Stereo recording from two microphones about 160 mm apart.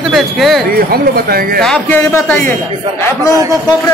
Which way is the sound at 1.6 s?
5° left (ahead or behind).